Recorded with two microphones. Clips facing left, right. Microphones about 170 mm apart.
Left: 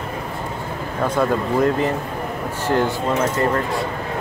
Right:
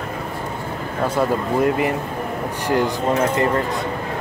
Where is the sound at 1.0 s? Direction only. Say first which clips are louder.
Even; 10° right (ahead or behind).